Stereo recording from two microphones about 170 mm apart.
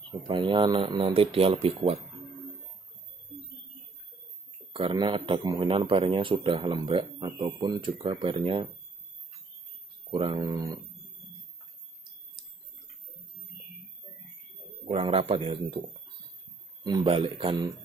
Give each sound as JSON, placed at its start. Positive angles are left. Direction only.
{"t": 0.3, "sound": "speech", "side_deg": -30}
{"t": 4.7, "sound": "speech", "side_deg": -30}
{"t": 10.1, "sound": "speech", "side_deg": -30}
{"t": 14.9, "sound": "speech", "side_deg": -35}
{"t": 16.8, "sound": "speech", "side_deg": -30}